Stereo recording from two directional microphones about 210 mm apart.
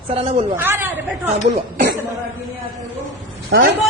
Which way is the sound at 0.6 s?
10° right (ahead or behind).